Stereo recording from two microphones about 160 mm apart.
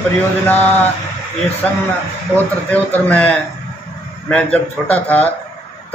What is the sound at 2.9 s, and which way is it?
Speech, 10° left (ahead or behind).